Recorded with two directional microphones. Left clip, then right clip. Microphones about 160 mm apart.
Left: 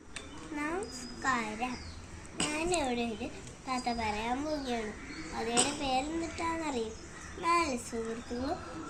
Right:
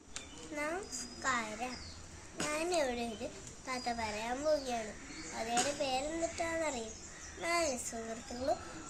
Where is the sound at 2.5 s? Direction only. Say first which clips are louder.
Left 1 dB; 30° right (ahead or behind).